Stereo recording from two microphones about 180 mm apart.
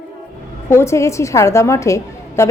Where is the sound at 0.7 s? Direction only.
15° left (ahead or behind).